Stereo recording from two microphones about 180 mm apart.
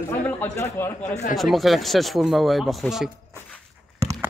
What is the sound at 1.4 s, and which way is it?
Speech, centre (ahead or behind).